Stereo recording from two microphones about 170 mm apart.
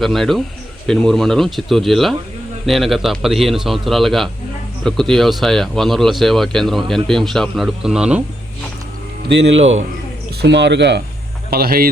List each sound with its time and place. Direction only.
0.0 s speech: centre (ahead or behind)
9.4 s speech: 40° right (ahead or behind)
10.4 s speech: 90° right
11.5 s speech: 60° right (ahead or behind)